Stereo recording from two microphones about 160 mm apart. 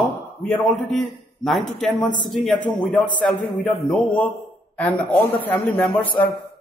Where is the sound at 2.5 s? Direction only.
55° left (ahead or behind).